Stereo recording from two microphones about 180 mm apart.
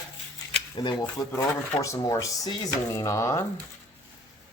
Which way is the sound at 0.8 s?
25° left (ahead or behind).